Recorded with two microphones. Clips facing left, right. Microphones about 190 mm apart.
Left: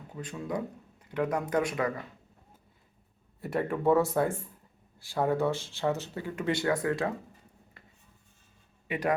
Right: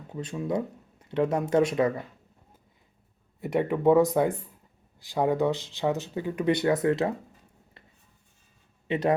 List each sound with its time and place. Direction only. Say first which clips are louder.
0.1 s speech: right 5 dB; 20° right (ahead or behind)
3.4 s speech: right 5 dB; 20° right (ahead or behind)
8.9 s a man's voice: right 4 dB; 25° right (ahead or behind)